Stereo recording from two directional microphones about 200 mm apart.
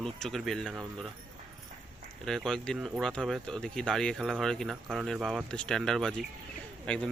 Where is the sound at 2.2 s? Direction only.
Centre (ahead or behind).